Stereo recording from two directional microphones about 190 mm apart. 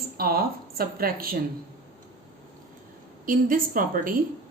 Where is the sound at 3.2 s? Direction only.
45° right (ahead or behind).